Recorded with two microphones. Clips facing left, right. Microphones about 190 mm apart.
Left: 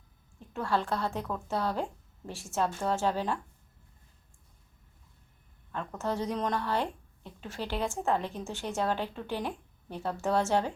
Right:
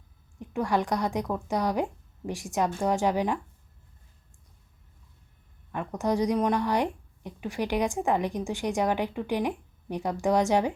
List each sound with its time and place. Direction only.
0.3 s a woman's voice: 15° right (ahead or behind)
5.7 s a woman's voice: 15° right (ahead or behind)